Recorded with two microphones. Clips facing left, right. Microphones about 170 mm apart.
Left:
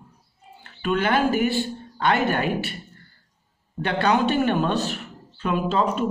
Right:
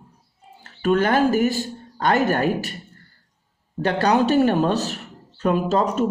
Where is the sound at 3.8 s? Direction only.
40° right (ahead or behind).